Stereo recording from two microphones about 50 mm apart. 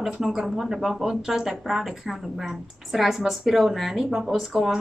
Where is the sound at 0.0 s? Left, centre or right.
Centre.